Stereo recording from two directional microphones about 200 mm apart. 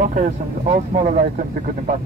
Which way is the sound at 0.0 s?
40° right (ahead or behind).